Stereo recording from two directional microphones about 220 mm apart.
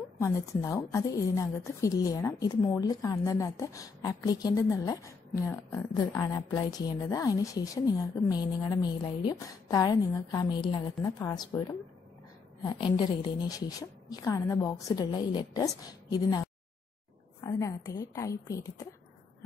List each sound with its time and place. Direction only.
0.2 s a woman's voice: 15° left (ahead or behind)